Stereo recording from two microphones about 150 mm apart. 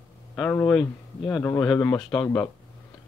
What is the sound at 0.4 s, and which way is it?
Speech, 15° left (ahead or behind).